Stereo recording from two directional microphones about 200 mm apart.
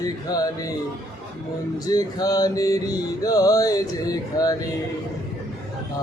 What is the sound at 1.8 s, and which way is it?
Music, 20° left (ahead or behind).